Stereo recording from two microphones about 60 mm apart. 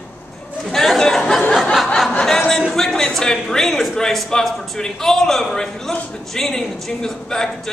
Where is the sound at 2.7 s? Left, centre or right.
Centre.